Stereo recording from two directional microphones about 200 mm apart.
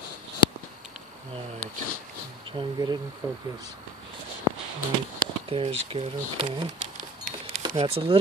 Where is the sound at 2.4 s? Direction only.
25° right (ahead or behind).